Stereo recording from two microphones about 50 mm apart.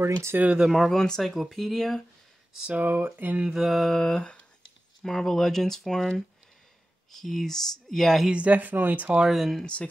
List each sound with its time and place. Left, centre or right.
0.0 s speech: right
0.6 s speech: centre
0.8 s speech: centre
2.8 s speech: right
3.5 s speech: centre
7.1 s speech: centre
8.3 s speech: right
9.3 s speech: centre